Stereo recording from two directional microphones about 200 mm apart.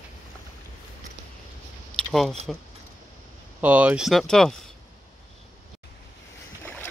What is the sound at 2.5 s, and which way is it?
Speech, centre (ahead or behind).